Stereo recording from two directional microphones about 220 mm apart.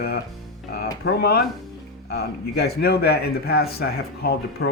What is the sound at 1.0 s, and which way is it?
Speech, 45° left (ahead or behind).